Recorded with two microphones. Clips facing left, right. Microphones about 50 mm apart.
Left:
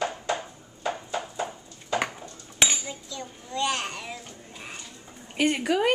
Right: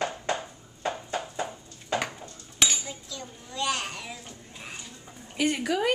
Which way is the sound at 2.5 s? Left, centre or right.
Centre.